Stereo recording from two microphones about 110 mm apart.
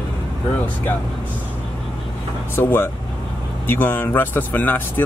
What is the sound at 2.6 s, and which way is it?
Speech, 20° left (ahead or behind).